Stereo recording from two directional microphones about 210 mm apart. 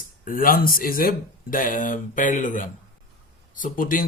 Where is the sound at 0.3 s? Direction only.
45° left (ahead or behind).